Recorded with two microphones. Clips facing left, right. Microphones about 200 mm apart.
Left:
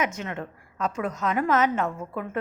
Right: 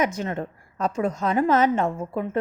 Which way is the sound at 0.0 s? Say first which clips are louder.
Right 4 dB; 35° right (ahead or behind).